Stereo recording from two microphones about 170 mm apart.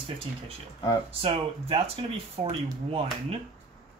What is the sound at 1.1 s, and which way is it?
Speech, 35° right (ahead or behind).